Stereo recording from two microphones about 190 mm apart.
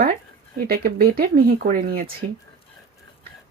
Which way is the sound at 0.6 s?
50° right (ahead or behind).